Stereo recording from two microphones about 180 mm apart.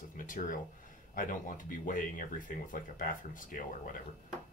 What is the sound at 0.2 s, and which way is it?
Speech, 45° left (ahead or behind).